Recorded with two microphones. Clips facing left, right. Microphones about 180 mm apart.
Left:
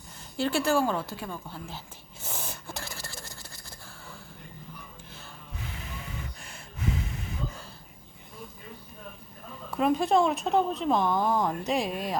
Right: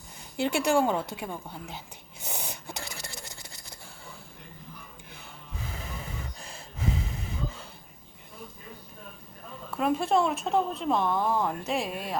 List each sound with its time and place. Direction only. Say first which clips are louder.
0.3 s a woman's voice: right 1 dB; 20° right (ahead or behind)
2.2 s a sound: right 1 dB; 15° right (ahead or behind)
9.7 s speech: left 2 dB; centre (ahead or behind)